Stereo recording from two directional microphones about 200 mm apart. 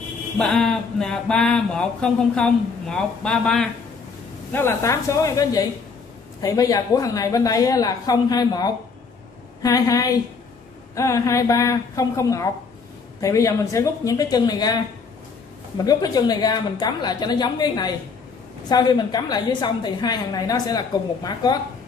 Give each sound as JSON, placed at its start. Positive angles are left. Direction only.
{"t": 0.4, "sound": "a woman's voice", "side_deg": 5}
{"t": 15.8, "sound": "a woman's voice", "side_deg": 20}